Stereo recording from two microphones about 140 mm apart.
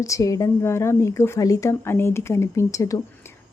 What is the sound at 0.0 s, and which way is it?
A woman's voice, 20° left (ahead or behind).